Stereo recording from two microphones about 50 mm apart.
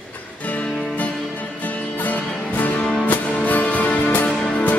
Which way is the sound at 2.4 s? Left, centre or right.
Left.